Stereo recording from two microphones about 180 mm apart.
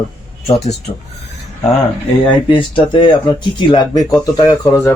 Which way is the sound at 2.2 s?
25° left (ahead or behind).